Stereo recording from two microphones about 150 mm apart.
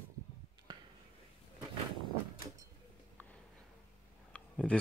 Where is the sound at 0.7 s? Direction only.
30° right (ahead or behind).